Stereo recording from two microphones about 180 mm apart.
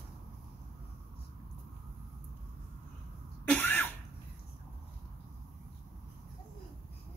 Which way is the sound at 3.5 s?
10° left (ahead or behind).